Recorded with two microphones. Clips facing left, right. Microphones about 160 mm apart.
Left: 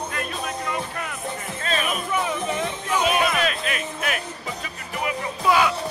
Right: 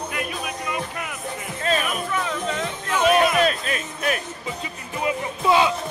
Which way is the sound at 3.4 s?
35° right (ahead or behind).